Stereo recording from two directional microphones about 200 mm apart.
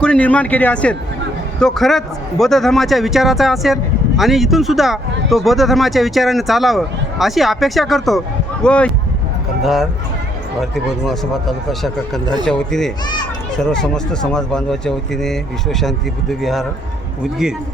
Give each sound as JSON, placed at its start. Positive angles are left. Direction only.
{"t": 0.0, "sound": "speech", "side_deg": 5}